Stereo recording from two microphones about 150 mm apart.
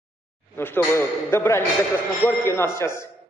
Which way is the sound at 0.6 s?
15° left (ahead or behind).